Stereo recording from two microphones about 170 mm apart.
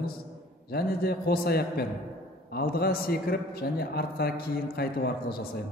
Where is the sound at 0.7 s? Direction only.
65° left (ahead or behind).